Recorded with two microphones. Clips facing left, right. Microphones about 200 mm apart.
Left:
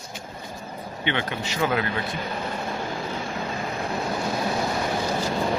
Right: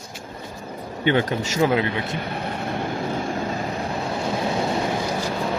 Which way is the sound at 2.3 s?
60° right (ahead or behind).